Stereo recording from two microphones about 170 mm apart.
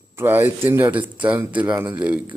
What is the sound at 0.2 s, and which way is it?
Speech, 10° right (ahead or behind).